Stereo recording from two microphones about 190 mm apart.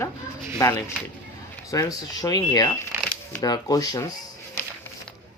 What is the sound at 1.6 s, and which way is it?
Speech, 20° left (ahead or behind).